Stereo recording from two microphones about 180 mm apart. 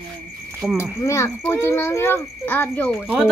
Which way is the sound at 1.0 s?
15° left (ahead or behind).